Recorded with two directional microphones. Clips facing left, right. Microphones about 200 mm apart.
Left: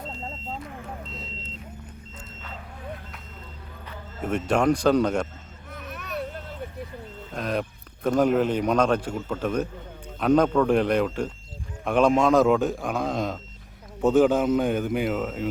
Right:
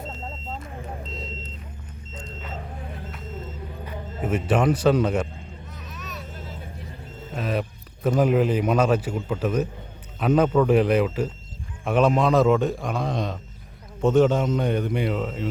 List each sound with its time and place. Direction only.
3.8 s speech: 5° right (ahead or behind)
5.7 s vehicle: 60° left (ahead or behind)
7.3 s a man's voice: 5° right (ahead or behind)